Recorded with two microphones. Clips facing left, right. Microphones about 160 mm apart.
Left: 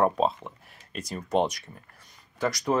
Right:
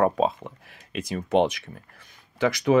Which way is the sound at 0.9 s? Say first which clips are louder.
Right 4 dB; 80° right.